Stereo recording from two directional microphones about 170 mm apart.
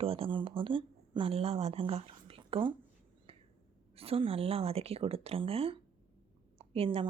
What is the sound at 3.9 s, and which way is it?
Speech, 35° right (ahead or behind).